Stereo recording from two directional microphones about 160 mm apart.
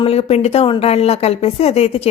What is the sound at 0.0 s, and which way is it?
Speech, 40° left (ahead or behind).